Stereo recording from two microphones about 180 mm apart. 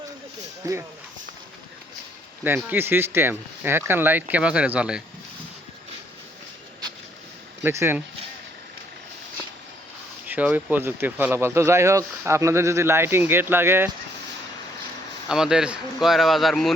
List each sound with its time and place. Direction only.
0.6 s speech: 15° right (ahead or behind)
2.6 s speech: 10° right (ahead or behind)
7.6 s speech: 15° right (ahead or behind)
10.2 s speech: 10° right (ahead or behind)
15.3 s speech: 5° right (ahead or behind)